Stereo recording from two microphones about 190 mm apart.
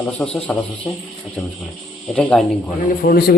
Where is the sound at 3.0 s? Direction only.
55° left (ahead or behind).